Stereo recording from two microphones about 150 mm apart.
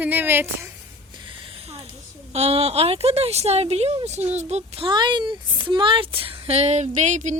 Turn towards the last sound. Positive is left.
turn(degrees=-55)  # may be behind; listen again after turning